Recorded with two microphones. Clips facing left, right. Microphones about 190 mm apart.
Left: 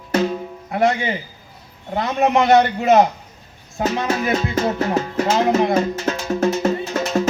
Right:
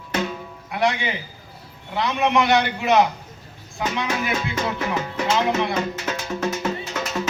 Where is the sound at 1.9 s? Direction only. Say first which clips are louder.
Left 3 dB; 45° left (ahead or behind).